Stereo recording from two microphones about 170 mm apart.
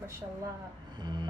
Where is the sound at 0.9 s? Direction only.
25° right (ahead or behind).